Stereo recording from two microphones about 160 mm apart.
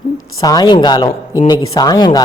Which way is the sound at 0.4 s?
25° left (ahead or behind).